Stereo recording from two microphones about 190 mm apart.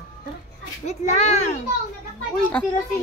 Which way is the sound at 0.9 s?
35° left (ahead or behind).